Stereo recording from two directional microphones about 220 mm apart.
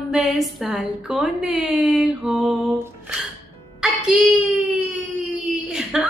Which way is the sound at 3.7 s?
Centre (ahead or behind).